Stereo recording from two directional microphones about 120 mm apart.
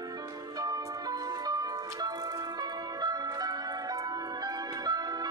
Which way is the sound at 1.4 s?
30° right (ahead or behind).